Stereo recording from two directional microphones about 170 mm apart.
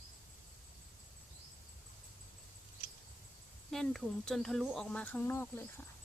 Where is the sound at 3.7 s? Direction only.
Centre (ahead or behind).